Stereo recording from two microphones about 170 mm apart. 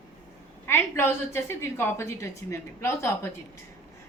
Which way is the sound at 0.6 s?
15° left (ahead or behind).